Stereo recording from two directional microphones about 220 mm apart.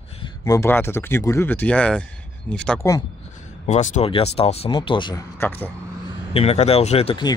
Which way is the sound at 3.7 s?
30° left (ahead or behind).